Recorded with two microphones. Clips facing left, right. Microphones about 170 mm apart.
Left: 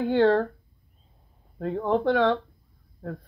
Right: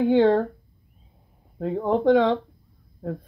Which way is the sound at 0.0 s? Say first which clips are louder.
Right 3 dB; 15° right (ahead or behind).